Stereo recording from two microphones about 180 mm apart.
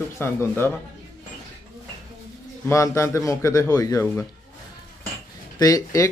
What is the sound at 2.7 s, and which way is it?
A man's voice, 15° left (ahead or behind).